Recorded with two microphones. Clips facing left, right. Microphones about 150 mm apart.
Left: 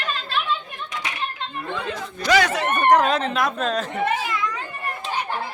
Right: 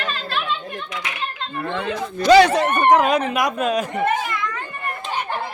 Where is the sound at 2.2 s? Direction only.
30° right (ahead or behind).